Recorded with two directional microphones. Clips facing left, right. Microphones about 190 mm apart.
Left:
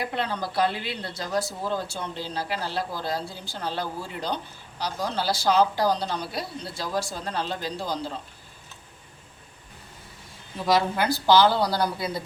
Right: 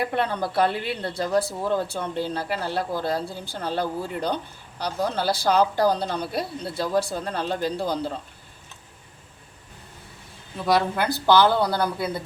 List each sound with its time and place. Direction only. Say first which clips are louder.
0.0 s speech: right 4 dB; 55° right (ahead or behind)
10.7 s speech: right 1 dB; 55° right (ahead or behind)